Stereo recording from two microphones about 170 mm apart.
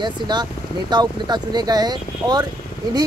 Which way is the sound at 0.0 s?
25° right (ahead or behind).